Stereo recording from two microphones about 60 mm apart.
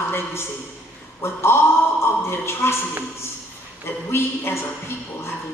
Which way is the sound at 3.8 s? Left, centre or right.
Left.